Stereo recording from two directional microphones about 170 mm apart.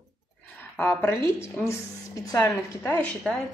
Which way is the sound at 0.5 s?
10° left (ahead or behind).